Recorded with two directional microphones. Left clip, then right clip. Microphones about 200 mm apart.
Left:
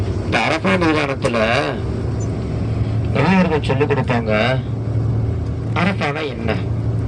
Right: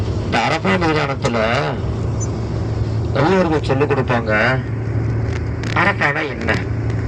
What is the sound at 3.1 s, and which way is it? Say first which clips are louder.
A man's voice: right 2 dB; 15° left (ahead or behind).